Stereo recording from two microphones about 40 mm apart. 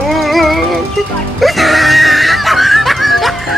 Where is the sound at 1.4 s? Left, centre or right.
Centre.